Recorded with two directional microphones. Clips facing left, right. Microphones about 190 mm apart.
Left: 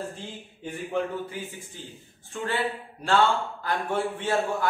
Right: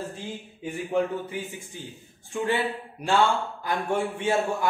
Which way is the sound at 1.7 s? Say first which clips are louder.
Right 5 dB; 15° right (ahead or behind).